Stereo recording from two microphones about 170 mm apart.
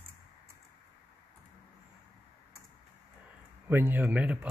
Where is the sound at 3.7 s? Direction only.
10° right (ahead or behind).